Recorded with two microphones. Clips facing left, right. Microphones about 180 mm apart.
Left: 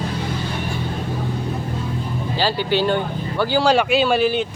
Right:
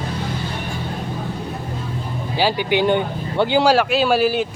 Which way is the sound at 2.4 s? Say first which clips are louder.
Right 2 dB; 15° right (ahead or behind).